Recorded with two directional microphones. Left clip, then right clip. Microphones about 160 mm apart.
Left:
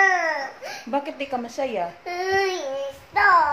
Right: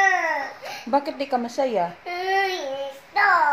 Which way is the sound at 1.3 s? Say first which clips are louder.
Right 4 dB; 45° right (ahead or behind).